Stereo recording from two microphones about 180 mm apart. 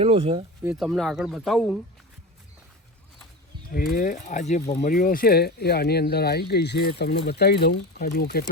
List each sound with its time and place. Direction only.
0.0 s speech: 30° right (ahead or behind)
0.6 s speech: 5° right (ahead or behind)
3.9 s speech: 50° left (ahead or behind)